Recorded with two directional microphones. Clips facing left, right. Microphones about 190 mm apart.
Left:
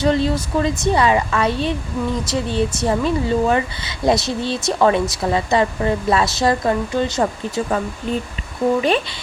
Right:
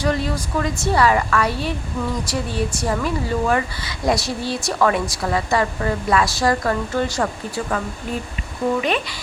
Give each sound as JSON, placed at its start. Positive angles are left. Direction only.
{"t": 0.0, "sound": "a woman's voice", "side_deg": 25}